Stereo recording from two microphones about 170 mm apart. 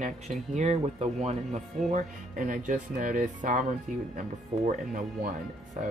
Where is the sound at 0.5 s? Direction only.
40° right (ahead or behind).